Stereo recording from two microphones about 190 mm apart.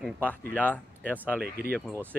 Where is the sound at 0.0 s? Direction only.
10° left (ahead or behind).